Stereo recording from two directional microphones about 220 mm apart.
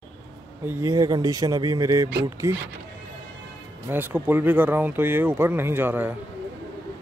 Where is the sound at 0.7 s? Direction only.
15° right (ahead or behind).